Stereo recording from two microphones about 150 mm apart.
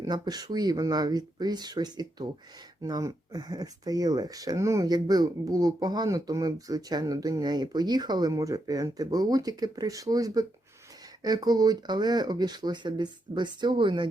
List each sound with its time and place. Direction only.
0.0 s speech: 25° right (ahead or behind)